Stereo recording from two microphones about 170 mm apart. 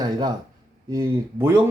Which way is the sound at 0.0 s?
25° right (ahead or behind).